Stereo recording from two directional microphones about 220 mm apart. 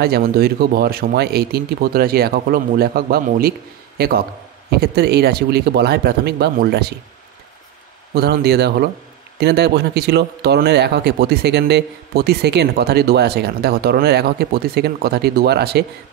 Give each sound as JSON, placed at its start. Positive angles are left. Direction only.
{"t": 0.0, "sound": "a man's voice", "side_deg": -45}
{"t": 8.1, "sound": "a man's voice", "side_deg": -45}